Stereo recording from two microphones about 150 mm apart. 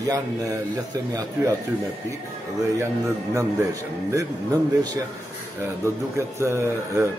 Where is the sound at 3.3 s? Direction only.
20° right (ahead or behind).